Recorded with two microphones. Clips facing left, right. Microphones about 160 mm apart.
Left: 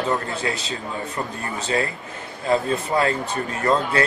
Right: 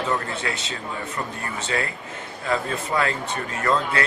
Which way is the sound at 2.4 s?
30° left (ahead or behind).